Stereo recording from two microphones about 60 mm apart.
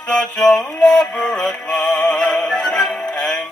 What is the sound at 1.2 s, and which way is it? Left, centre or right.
Synthetic singing, centre.